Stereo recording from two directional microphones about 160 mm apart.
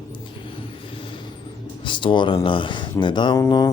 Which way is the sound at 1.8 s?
30° left (ahead or behind).